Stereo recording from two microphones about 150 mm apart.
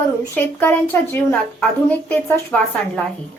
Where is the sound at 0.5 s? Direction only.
10° left (ahead or behind).